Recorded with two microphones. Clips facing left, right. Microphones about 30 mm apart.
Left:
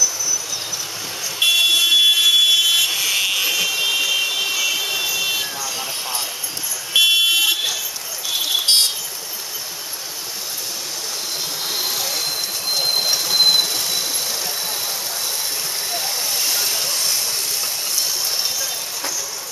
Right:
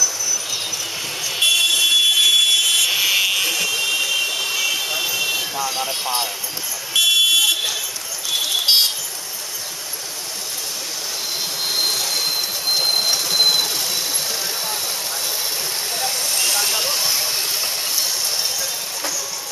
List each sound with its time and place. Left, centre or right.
1.4 s fire alarm: centre
2.9 s vehicle: centre
5.7 s vehicle: centre
6.9 s vehicle: centre
11.6 s train: centre
15.9 s vehicle: centre